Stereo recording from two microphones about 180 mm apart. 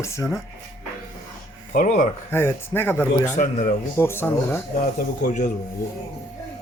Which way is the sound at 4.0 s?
10° left (ahead or behind).